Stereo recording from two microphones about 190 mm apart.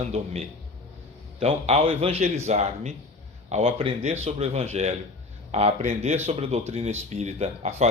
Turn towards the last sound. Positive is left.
turn(degrees=-35)  # may be behind; listen again after turning